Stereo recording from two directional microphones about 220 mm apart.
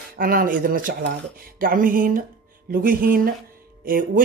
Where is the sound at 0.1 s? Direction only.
40° right (ahead or behind).